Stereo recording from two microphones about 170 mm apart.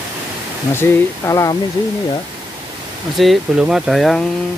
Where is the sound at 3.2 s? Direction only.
Centre (ahead or behind).